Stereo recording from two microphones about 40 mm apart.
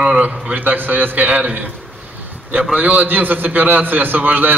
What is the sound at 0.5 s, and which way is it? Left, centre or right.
A man's voice, right.